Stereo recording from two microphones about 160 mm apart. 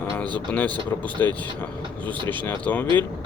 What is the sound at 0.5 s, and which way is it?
Speech, 10° left (ahead or behind).